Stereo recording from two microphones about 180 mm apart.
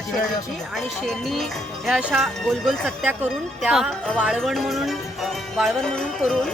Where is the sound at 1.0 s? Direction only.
Centre (ahead or behind).